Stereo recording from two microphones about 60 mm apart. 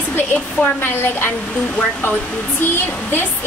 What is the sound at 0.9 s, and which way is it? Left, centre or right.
Speech, left.